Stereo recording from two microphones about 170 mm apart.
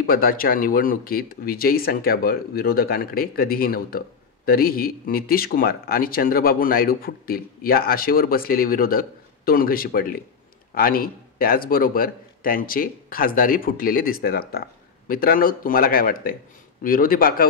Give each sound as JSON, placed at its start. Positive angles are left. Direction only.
{"t": 0.0, "sound": "a man's voice", "side_deg": 60}